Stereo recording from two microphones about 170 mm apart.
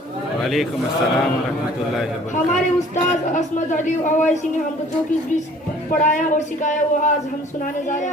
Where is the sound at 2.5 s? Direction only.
45° left (ahead or behind).